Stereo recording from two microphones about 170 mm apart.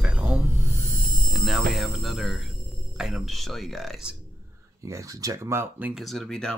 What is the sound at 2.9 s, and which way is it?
Music, 5° right (ahead or behind).